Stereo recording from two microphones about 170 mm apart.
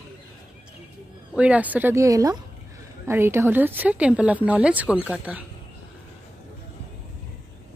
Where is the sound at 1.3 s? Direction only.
10° right (ahead or behind).